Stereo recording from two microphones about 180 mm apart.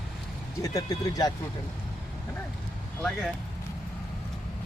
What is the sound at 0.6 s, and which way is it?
Speech, 20° left (ahead or behind).